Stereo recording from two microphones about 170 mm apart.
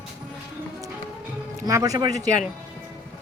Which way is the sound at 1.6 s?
20° right (ahead or behind).